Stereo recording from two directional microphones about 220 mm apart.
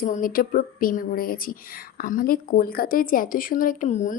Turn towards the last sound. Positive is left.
turn(degrees=35)  # may be behind; listen again after turning